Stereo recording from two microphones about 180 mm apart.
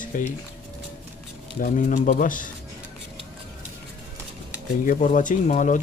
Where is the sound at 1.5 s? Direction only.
45° left (ahead or behind).